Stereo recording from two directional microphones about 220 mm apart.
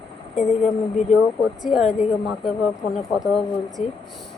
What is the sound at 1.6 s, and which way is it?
Speech, centre (ahead or behind).